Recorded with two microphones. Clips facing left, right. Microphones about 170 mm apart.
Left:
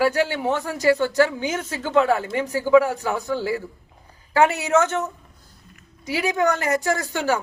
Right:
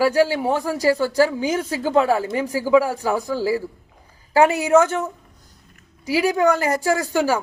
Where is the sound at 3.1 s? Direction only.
10° right (ahead or behind).